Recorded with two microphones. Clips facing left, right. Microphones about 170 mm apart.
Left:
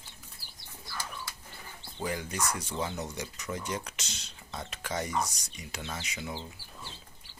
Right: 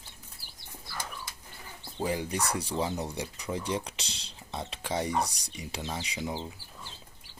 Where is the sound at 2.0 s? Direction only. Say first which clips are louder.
Right 3 dB; 30° right (ahead or behind).